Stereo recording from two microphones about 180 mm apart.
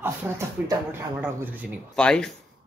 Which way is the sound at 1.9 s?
5° left (ahead or behind).